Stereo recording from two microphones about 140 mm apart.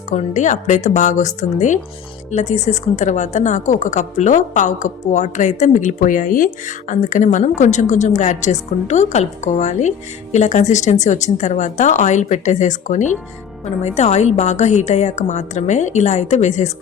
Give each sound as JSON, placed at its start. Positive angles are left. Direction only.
{"t": 0.1, "sound": "a woman's voice", "side_deg": 60}